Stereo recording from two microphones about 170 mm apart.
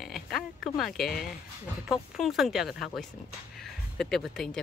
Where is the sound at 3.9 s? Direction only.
5° left (ahead or behind).